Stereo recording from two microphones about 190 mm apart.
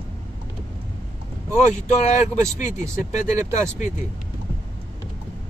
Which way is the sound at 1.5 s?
40° left (ahead or behind).